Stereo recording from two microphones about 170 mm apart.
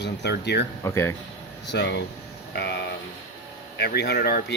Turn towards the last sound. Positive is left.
turn(degrees=70)  # may be behind; listen again after turning